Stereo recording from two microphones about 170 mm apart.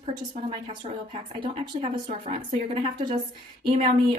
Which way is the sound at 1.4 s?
30° right (ahead or behind).